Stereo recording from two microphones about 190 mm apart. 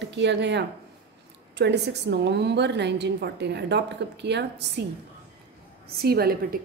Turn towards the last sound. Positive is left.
turn(degrees=-55)  # may be behind; listen again after turning